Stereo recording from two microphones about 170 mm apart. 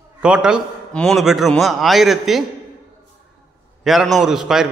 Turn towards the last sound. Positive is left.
turn(degrees=-5)  # may be behind; listen again after turning